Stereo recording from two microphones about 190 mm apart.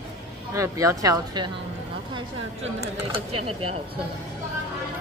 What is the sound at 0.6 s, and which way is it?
Speech, 15° right (ahead or behind).